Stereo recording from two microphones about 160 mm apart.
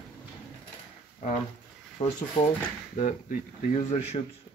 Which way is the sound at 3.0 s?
50° left (ahead or behind).